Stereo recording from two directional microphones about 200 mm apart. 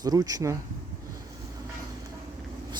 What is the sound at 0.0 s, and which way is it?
Speech, 20° right (ahead or behind).